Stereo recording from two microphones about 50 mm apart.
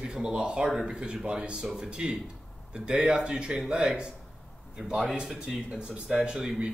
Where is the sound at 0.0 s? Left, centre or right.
Centre.